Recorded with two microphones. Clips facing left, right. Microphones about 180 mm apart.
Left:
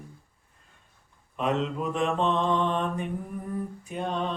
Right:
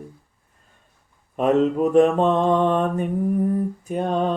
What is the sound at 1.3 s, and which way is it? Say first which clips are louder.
Mantra: right 9 dB; 45° right (ahead or behind).